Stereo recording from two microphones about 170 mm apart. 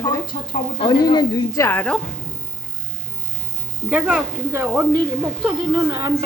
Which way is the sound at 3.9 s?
5° right (ahead or behind).